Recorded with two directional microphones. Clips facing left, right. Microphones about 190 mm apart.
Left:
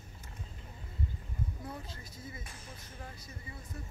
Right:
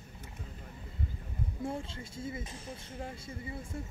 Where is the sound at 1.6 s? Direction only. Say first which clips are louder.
Right 7 dB; 25° right (ahead or behind).